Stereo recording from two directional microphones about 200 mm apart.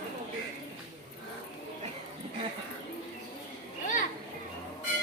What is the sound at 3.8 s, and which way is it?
Children playing, 40° left (ahead or behind).